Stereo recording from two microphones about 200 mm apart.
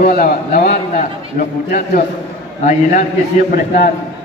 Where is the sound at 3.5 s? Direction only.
45° left (ahead or behind).